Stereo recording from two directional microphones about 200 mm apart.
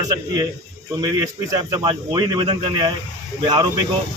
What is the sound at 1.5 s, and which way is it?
Speech, 20° right (ahead or behind).